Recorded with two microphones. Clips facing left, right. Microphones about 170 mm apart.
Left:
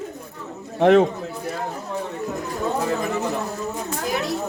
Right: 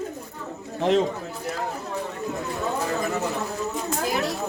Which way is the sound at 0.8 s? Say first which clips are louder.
Left 6 dB; 60° left (ahead or behind).